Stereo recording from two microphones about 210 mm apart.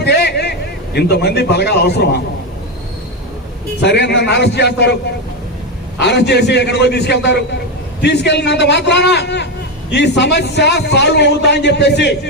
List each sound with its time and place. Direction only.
0.0 s vehicle: 55° left (ahead or behind)
0.9 s a man's voice: 50° left (ahead or behind)
3.8 s a man's voice: 55° left (ahead or behind)
6.0 s a man's voice: 55° left (ahead or behind)